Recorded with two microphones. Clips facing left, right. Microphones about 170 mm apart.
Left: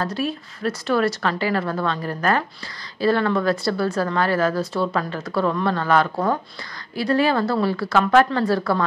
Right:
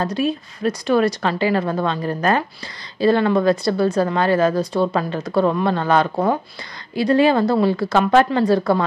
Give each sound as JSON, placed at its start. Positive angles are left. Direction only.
{"t": 0.0, "sound": "speech", "side_deg": -20}